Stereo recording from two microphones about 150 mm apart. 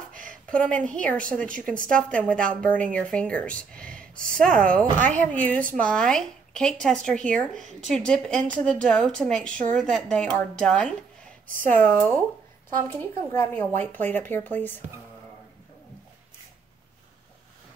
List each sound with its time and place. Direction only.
0.3 s a woman's voice: 5° left (ahead or behind)
4.5 s speech: 65° right (ahead or behind)
5.0 s a woman's voice: 10° left (ahead or behind)